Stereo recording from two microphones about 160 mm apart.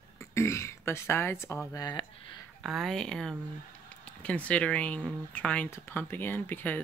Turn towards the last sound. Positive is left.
turn(degrees=10)  # may be behind; listen again after turning